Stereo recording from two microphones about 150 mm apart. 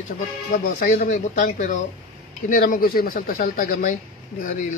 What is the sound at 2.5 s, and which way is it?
Speech, 70° left (ahead or behind).